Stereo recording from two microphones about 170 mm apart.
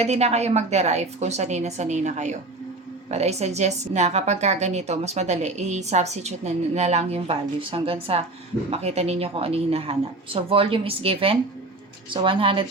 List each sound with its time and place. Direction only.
0.0 s a woman's voice: 40° right (ahead or behind)